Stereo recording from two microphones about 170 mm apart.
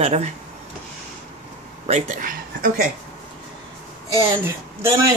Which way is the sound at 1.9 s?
45° right (ahead or behind).